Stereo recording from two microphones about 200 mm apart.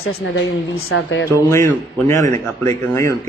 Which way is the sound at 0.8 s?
85° left.